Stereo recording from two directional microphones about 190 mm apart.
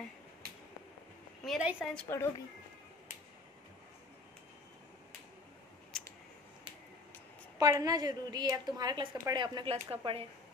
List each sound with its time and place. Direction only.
1.4 s a woman's voice: centre (ahead or behind); by 2.4 s 15° left (ahead or behind)
7.5 s a woman's voice: 20° right (ahead or behind)